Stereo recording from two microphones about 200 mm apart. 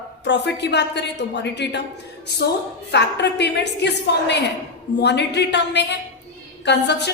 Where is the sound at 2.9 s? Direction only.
60° left (ahead or behind).